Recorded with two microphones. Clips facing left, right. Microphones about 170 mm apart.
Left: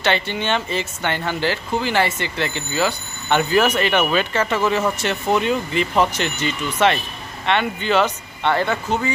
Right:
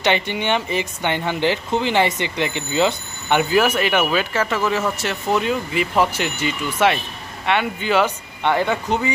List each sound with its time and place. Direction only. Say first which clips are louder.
0.0 s speech: right 1 dB; 15° right (ahead or behind)